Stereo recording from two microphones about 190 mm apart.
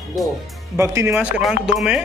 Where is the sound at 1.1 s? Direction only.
5° right (ahead or behind).